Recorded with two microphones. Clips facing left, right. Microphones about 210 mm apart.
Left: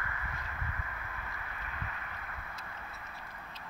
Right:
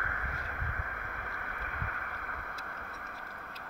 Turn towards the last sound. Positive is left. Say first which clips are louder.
# right 2 dB
turn(degrees=-55)  # may be behind; listen again after turning